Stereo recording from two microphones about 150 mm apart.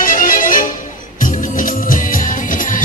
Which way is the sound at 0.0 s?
65° left (ahead or behind).